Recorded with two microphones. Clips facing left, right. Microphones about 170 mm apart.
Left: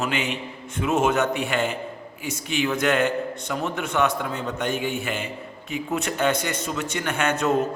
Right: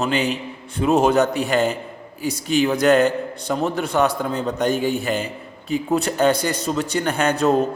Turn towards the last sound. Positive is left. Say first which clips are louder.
# right 4 dB
turn(degrees=-35)  # may be behind; listen again after turning